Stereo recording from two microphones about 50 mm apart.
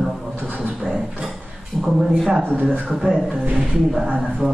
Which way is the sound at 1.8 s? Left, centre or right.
Centre.